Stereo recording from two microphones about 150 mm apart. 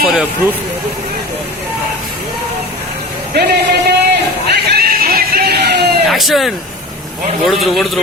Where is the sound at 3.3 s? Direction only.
90° right.